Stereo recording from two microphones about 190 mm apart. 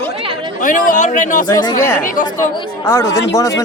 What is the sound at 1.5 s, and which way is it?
Speech, 20° left (ahead or behind).